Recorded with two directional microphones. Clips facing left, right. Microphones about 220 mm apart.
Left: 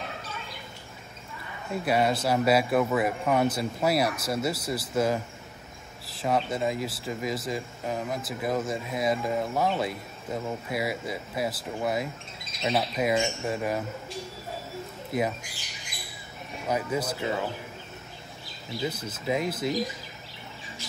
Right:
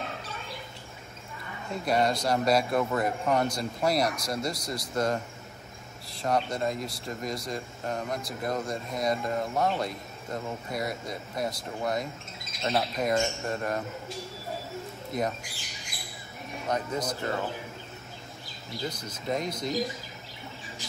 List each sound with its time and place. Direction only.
1.7 s speech: 5° left (ahead or behind)
15.1 s speech: 5° left (ahead or behind)
16.6 s speech: 5° left (ahead or behind)
18.8 s speech: 5° left (ahead or behind)